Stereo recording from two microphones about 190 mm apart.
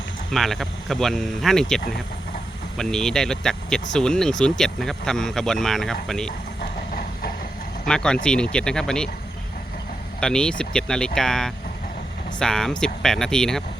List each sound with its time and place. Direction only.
0.3 s speech: centre (ahead or behind)
6.6 s vehicle: 50° left (ahead or behind)
7.9 s speech: 5° left (ahead or behind)
10.2 s speech: 5° left (ahead or behind)